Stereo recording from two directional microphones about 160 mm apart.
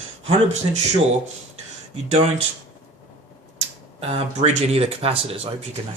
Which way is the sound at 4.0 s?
40° right (ahead or behind).